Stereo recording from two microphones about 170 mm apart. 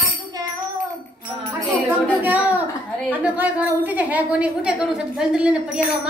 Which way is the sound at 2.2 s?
10° right (ahead or behind).